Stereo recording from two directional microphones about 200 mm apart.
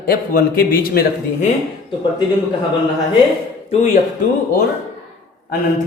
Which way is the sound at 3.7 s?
35° left (ahead or behind).